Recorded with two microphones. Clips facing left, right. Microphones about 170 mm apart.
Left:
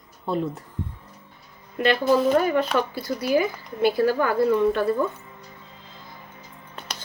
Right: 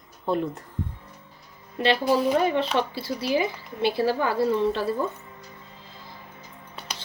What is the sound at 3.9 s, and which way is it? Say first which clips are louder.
Speech: left 3 dB; 25° right (ahead or behind).